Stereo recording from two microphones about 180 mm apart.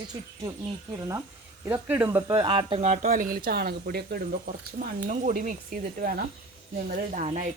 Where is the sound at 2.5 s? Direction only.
30° right (ahead or behind).